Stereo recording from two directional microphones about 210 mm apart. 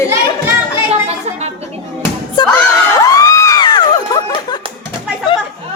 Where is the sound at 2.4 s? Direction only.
20° left (ahead or behind).